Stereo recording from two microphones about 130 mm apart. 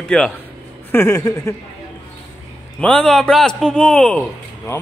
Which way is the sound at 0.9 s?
25° left (ahead or behind).